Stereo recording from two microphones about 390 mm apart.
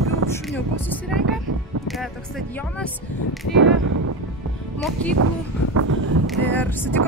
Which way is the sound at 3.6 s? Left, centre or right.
Right.